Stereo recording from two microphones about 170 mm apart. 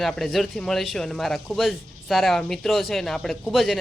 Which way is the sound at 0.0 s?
Centre (ahead or behind).